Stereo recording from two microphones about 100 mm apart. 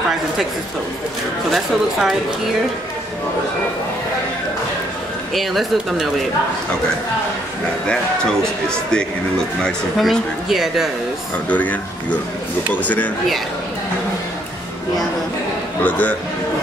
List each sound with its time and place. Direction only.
1.5 s speech: centre (ahead or behind)
5.3 s speech: centre (ahead or behind)
7.8 s speech: 10° left (ahead or behind)
11.4 s speech: 15° left (ahead or behind)
15.8 s speech: 15° left (ahead or behind)